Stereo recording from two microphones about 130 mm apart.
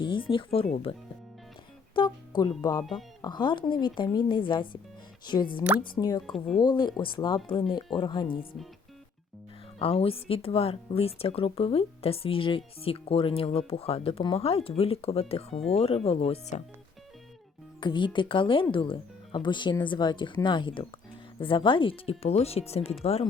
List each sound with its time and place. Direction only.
0.0 s speech: 40° left (ahead or behind)
2.0 s speech: 35° left (ahead or behind)
9.7 s speech: 45° left (ahead or behind)
17.7 s speech: 35° left (ahead or behind); by 23.0 s 50° left (ahead or behind)